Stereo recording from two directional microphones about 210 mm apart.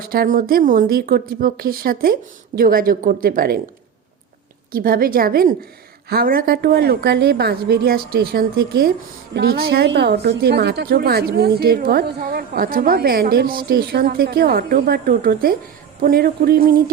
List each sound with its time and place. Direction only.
0.0 s a woman's voice: 40° right (ahead or behind)
4.7 s a woman's voice: 45° right (ahead or behind)